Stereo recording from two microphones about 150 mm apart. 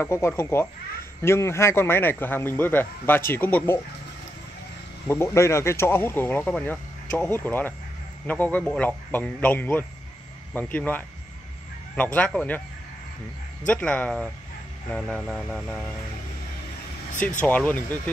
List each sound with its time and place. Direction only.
0.0 s speech: 20° left (ahead or behind)
5.0 s speech: 15° left (ahead or behind)
13.7 s speech: 10° left (ahead or behind)
17.1 s speech: 55° left (ahead or behind)
17.4 s speech: 10° left (ahead or behind)